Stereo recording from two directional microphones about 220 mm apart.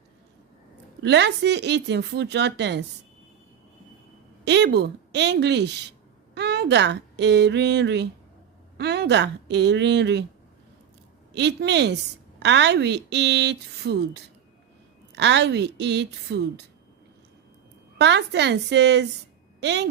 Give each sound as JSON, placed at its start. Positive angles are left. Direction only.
{"t": 1.0, "sound": "a woman's voice", "side_deg": -50}
{"t": 4.4, "sound": "a woman's voice", "side_deg": -50}
{"t": 11.3, "sound": "a woman's voice", "side_deg": -50}
{"t": 17.9, "sound": "a woman's voice", "side_deg": -50}